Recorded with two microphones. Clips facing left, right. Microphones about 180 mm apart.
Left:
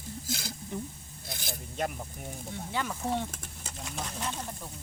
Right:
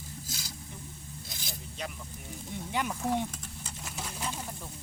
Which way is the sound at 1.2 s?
55° left (ahead or behind).